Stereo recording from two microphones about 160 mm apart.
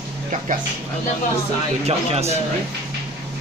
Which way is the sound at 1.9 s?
40° right (ahead or behind).